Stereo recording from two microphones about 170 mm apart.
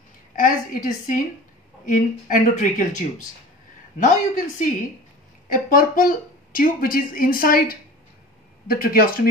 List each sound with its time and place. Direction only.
0.4 s a woman's voice: 50° left (ahead or behind)